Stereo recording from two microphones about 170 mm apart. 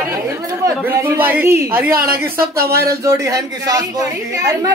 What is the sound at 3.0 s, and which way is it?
Speech, 20° right (ahead or behind).